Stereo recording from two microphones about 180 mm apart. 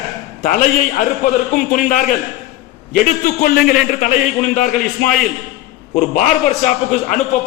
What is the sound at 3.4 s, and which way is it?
Speech, 60° left (ahead or behind).